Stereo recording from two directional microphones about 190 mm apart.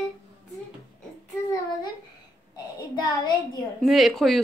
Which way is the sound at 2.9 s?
20° left (ahead or behind).